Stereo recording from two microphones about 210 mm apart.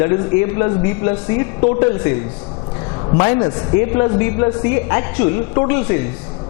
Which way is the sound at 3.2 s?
20° left (ahead or behind).